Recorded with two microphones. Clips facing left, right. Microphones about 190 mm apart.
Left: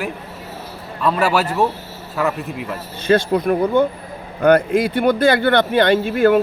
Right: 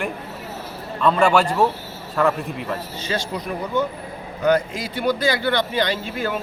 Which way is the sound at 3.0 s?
55° left (ahead or behind).